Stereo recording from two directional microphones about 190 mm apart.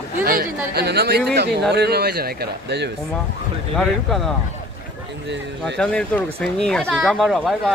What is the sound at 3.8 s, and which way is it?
Speech, centre (ahead or behind).